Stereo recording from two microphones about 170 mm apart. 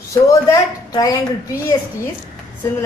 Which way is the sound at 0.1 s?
20° left (ahead or behind).